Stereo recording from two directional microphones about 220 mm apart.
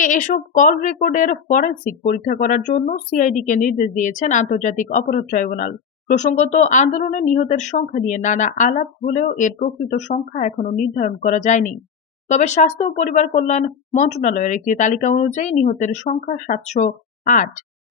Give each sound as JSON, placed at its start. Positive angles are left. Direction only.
{"t": 0.0, "sound": "speech", "side_deg": 35}